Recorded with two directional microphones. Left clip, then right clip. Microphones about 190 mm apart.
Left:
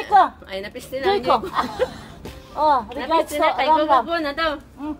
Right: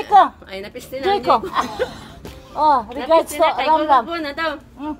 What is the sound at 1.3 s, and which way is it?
A woman's voice, 50° right (ahead or behind).